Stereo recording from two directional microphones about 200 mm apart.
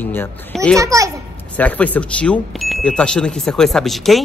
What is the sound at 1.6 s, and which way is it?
Speech, 5° left (ahead or behind).